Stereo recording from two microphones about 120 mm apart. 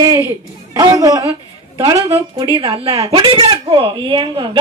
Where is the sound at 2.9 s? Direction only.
55° right (ahead or behind).